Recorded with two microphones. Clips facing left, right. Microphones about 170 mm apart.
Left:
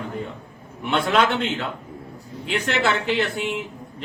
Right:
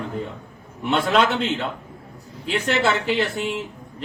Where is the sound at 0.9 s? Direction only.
Centre (ahead or behind).